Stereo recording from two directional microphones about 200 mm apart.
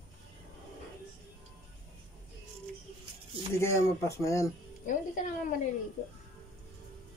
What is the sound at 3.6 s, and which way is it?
Speech, 15° left (ahead or behind).